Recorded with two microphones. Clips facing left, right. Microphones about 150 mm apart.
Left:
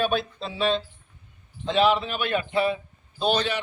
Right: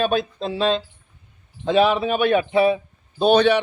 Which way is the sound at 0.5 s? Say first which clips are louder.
Right 3 dB; 90° right.